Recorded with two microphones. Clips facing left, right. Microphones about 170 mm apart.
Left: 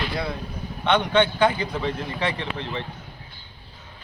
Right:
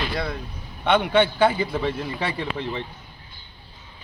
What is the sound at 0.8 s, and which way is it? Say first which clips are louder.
A man's voice: right 1 dB; 10° right (ahead or behind).